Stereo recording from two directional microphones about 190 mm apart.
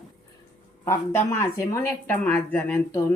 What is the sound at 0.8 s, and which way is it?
Speech, 15° left (ahead or behind).